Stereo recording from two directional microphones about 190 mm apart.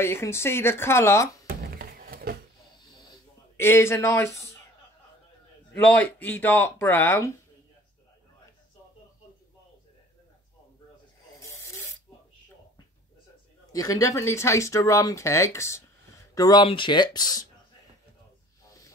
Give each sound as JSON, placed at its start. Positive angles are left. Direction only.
{"t": 0.0, "sound": "speech", "side_deg": 15}
{"t": 1.5, "sound": "a sound", "side_deg": -50}
{"t": 3.1, "sound": "a sound", "side_deg": 15}
{"t": 5.7, "sound": "speech", "side_deg": 10}
{"t": 11.3, "sound": "spray", "side_deg": 15}
{"t": 13.7, "sound": "speech", "side_deg": 15}